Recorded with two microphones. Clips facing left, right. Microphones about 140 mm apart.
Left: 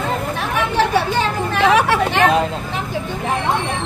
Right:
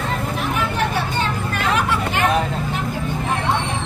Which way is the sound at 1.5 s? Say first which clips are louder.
Left 8 dB; 90° left.